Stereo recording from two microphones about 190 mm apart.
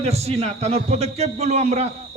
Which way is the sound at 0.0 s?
35° right (ahead or behind).